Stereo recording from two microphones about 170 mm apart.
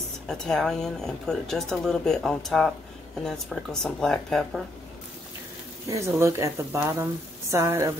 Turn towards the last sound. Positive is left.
turn(degrees=-15)  # may be behind; listen again after turning